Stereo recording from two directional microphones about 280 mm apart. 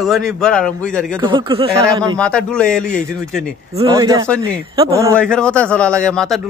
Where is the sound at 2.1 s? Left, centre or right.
Centre.